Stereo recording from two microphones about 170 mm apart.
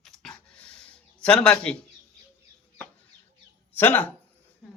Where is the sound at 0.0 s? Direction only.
5° left (ahead or behind).